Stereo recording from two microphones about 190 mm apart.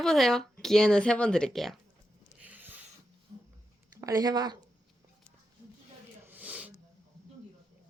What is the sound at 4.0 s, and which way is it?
Speech, 20° right (ahead or behind).